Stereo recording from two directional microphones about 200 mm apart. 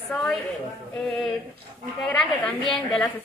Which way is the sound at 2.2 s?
Centre (ahead or behind).